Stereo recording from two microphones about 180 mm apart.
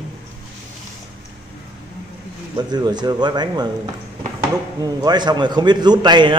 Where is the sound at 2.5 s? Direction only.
25° right (ahead or behind).